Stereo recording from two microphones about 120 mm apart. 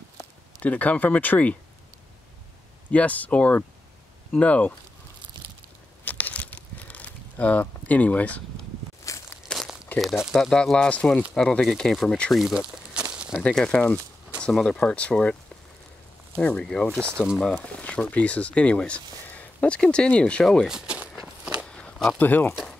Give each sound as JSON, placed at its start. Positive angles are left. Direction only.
{"t": 0.6, "sound": "speech", "side_deg": 10}
{"t": 2.9, "sound": "speech", "side_deg": 10}
{"t": 6.0, "sound": "a sound", "side_deg": 15}
{"t": 9.1, "sound": "walk", "side_deg": 25}
{"t": 9.5, "sound": "crumpling", "side_deg": 0}
{"t": 9.9, "sound": "speech", "side_deg": 0}
{"t": 13.4, "sound": "speech", "side_deg": 5}
{"t": 16.3, "sound": "speech", "side_deg": 5}
{"t": 17.7, "sound": "speech", "side_deg": 10}
{"t": 20.6, "sound": "a sound", "side_deg": -5}
{"t": 21.6, "sound": "walk", "side_deg": 10}
{"t": 22.2, "sound": "speech", "side_deg": 15}